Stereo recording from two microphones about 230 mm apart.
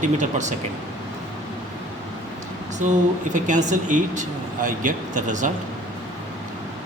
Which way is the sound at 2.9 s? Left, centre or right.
Right.